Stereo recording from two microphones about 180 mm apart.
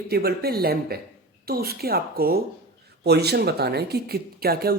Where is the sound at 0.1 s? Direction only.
60° right (ahead or behind).